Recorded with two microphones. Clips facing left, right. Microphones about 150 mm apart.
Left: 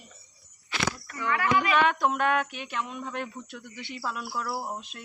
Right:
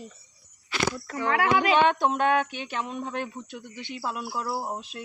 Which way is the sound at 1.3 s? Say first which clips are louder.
Right 2 dB; 90° right.